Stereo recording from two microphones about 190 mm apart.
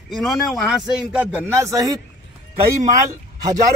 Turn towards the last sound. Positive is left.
turn(degrees=-15)  # may be behind; listen again after turning